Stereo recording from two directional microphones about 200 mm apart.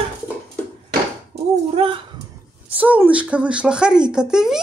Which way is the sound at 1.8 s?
25° right (ahead or behind).